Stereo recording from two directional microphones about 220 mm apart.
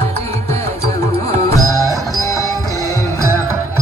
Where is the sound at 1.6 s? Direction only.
15° left (ahead or behind).